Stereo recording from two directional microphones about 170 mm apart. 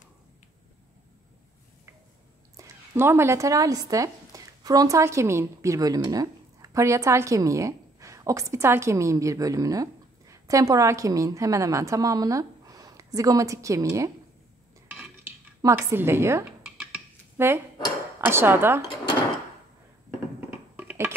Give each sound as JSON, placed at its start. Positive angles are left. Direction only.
{"t": 2.5, "sound": "speech", "side_deg": -15}
{"t": 15.6, "sound": "a woman's voice", "side_deg": -15}
{"t": 20.3, "sound": "music", "side_deg": -10}